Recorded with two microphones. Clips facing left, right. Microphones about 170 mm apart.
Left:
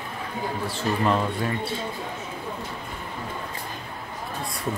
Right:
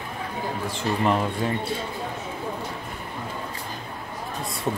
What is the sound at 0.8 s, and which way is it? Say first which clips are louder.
Speech: even; 15° right (ahead or behind).